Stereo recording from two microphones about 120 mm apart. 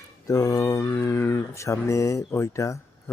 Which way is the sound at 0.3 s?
30° left (ahead or behind).